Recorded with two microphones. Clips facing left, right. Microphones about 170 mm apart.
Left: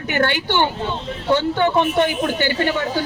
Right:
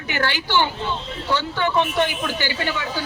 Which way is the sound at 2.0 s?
50° left (ahead or behind).